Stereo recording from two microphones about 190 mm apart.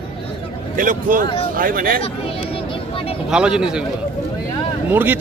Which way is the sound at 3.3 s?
5° right (ahead or behind).